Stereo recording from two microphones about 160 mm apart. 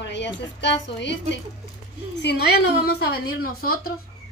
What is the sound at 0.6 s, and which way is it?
Speech, 90° left.